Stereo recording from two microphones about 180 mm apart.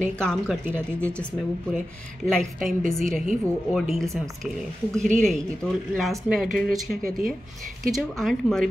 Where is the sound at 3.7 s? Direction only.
Centre (ahead or behind).